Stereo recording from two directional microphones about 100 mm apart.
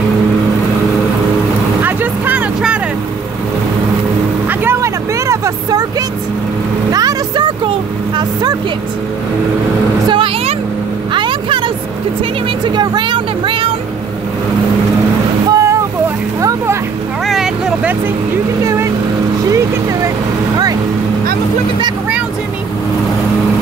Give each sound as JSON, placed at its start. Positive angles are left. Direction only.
{"t": 1.8, "sound": "vehicle", "side_deg": -20}
{"t": 4.5, "sound": "vehicle", "side_deg": -25}
{"t": 10.0, "sound": "vehicle", "side_deg": -60}
{"t": 15.5, "sound": "boat", "side_deg": -30}
{"t": 16.3, "sound": "vehicle", "side_deg": -30}
{"t": 17.3, "sound": "vehicle", "side_deg": -5}
{"t": 18.6, "sound": "vehicle", "side_deg": -30}